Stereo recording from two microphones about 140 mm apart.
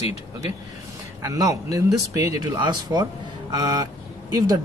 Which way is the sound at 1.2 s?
25° right (ahead or behind).